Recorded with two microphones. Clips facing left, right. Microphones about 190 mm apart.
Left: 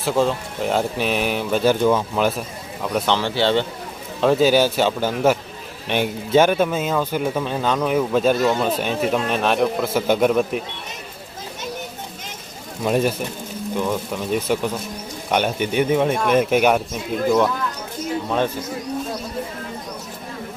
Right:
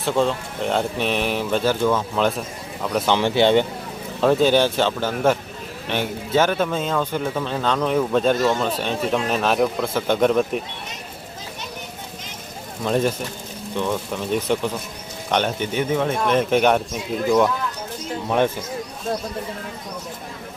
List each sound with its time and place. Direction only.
0.0 s speech: centre (ahead or behind)
1.6 s a man's voice: 15° left (ahead or behind)
3.1 s speech: 15° right (ahead or behind)
4.2 s a man's voice: centre (ahead or behind)
12.8 s a man's voice: 10° left (ahead or behind)